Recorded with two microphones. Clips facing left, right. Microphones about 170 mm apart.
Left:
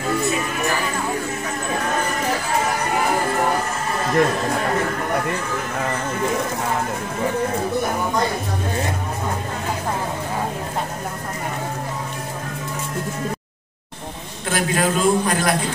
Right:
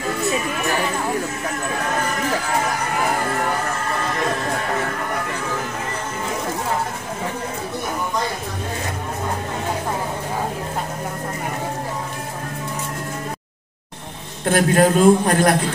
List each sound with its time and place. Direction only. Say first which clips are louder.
14.5 s a man's voice: right 5 dB; 50° right (ahead or behind)